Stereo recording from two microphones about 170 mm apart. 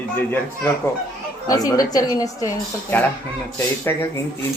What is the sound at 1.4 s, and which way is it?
A woman's voice, 20° left (ahead or behind).